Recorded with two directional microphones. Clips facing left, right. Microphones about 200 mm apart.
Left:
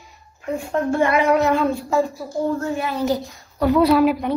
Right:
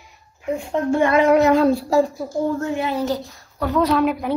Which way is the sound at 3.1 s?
15° left (ahead or behind).